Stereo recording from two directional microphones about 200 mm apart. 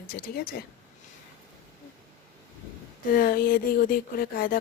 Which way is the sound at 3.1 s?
45° left (ahead or behind).